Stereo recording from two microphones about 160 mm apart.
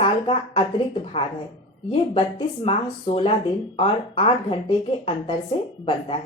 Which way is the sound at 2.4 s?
35° left (ahead or behind).